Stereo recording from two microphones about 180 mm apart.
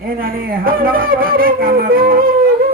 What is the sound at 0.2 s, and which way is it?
Wind instrument, 55° right (ahead or behind).